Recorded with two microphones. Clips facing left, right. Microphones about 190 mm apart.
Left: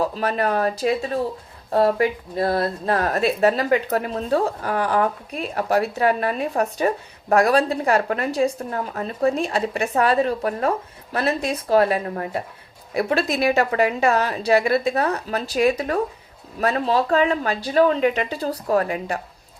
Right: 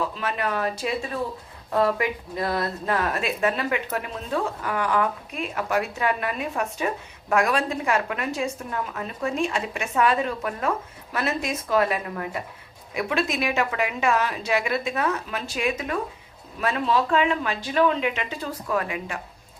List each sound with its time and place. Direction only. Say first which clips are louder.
0.0 s speech: left 5 dB; 40° left (ahead or behind)